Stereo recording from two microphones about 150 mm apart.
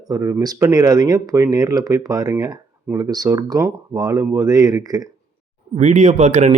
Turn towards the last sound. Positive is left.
turn(degrees=-50)  # may be behind; listen again after turning